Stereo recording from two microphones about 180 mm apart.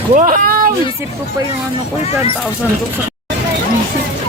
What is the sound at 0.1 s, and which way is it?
Speech, 45° right (ahead or behind).